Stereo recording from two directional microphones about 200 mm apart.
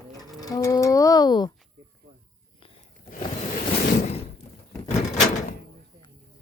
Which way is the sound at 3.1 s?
40° left (ahead or behind).